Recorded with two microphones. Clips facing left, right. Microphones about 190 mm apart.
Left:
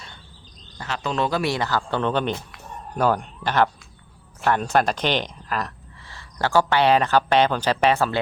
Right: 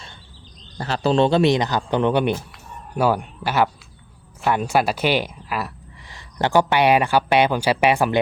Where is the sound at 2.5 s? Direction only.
10° right (ahead or behind).